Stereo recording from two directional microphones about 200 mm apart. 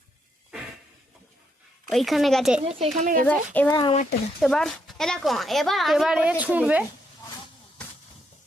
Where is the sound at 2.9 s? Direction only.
40° right (ahead or behind).